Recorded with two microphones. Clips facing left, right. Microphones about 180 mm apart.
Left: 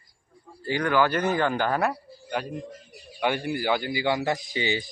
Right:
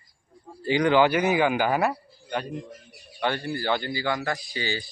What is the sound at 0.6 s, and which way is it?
Speech, 20° right (ahead or behind).